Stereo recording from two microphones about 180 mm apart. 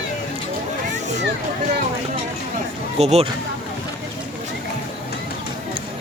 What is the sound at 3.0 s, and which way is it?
Speech, 35° right (ahead or behind).